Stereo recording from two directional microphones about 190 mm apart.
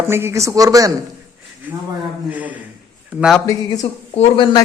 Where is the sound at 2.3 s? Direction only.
10° right (ahead or behind).